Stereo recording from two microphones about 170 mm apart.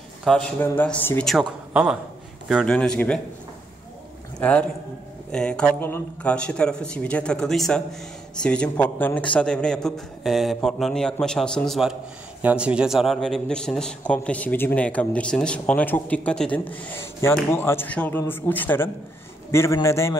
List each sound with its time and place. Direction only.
0.2 s a man's voice: 5° left (ahead or behind)
4.4 s a man's voice: 10° left (ahead or behind)